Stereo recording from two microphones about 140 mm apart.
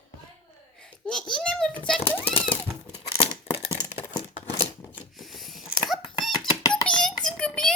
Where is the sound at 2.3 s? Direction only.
40° left (ahead or behind).